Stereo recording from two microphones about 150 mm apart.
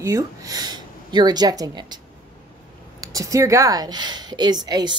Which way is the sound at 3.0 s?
25° right (ahead or behind).